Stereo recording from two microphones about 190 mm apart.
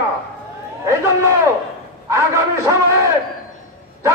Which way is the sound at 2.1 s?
15° right (ahead or behind).